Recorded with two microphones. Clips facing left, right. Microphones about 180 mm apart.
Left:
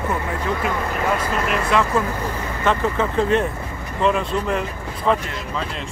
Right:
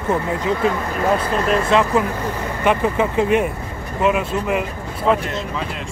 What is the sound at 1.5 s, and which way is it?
Speech, 20° right (ahead or behind).